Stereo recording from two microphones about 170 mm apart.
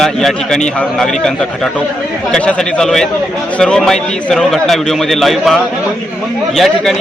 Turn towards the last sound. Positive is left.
turn(degrees=0)  # may be behind; listen again after turning